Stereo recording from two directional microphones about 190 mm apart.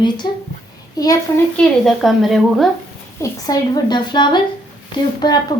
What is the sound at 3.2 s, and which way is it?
A woman's voice, 20° left (ahead or behind).